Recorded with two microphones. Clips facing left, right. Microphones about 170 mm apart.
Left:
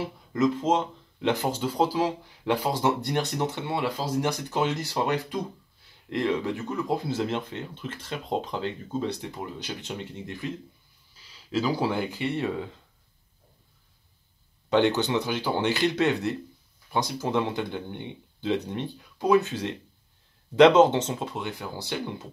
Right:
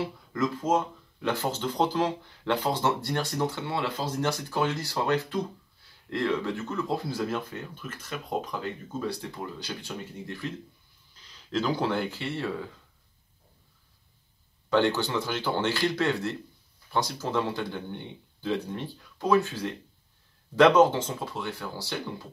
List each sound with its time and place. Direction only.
0.3 s speech: 25° left (ahead or behind)
1.5 s speech: 10° left (ahead or behind)
11.1 s speech: 5° left (ahead or behind)
14.7 s speech: 20° left (ahead or behind)